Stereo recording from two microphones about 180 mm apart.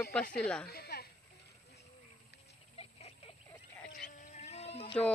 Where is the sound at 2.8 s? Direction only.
35° left (ahead or behind).